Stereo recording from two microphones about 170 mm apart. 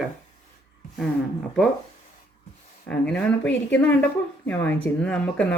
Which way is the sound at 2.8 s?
5° left (ahead or behind).